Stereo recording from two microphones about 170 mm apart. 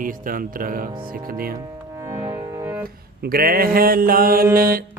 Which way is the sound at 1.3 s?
60° right (ahead or behind).